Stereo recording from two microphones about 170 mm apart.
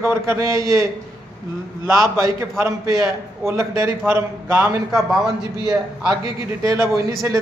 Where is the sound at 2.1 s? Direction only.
15° right (ahead or behind).